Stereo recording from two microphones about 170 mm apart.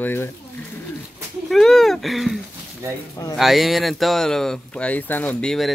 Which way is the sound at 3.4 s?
Centre (ahead or behind).